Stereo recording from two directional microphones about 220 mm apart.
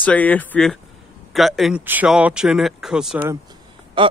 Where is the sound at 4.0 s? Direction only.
20° right (ahead or behind).